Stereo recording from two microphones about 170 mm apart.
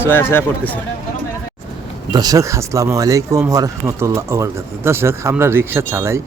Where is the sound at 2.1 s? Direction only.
20° right (ahead or behind).